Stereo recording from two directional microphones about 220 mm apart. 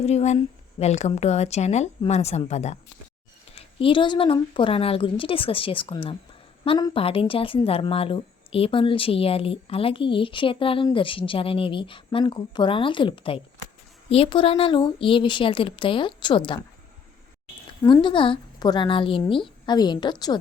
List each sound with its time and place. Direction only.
0.0 s speech: 30° left (ahead or behind)
17.8 s speech: 20° left (ahead or behind)